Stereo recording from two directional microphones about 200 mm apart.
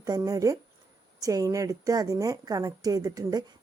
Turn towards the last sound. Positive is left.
turn(degrees=-15)  # may be behind; listen again after turning